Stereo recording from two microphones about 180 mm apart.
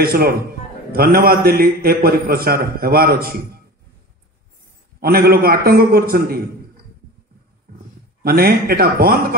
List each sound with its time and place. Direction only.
0.0 s a man's voice: 55° right (ahead or behind)
5.0 s a man's voice: 55° right (ahead or behind)
8.2 s a man's voice: 55° right (ahead or behind)